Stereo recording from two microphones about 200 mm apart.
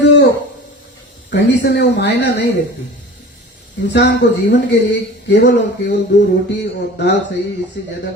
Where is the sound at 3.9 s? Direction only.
60° left (ahead or behind).